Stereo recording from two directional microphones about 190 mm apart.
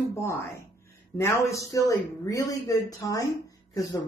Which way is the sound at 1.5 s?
15° left (ahead or behind).